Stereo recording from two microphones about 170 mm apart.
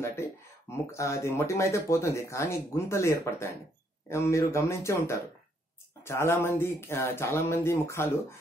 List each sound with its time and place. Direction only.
0.0 s speech: 15° left (ahead or behind)